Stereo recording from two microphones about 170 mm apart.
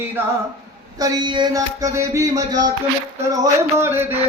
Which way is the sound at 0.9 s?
25° right (ahead or behind).